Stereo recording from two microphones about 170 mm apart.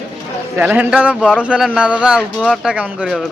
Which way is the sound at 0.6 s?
10° right (ahead or behind).